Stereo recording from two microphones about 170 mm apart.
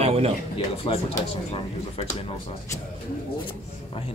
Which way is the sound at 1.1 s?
40° left (ahead or behind).